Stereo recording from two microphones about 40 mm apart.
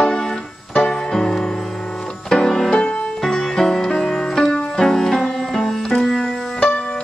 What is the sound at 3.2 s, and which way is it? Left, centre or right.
Music, centre.